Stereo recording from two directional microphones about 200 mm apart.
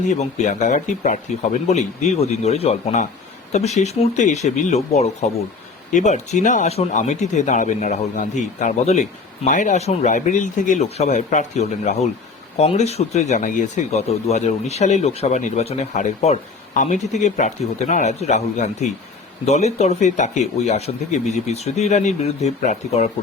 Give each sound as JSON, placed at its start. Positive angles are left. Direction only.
{"t": 0.1, "sound": "speech", "side_deg": 35}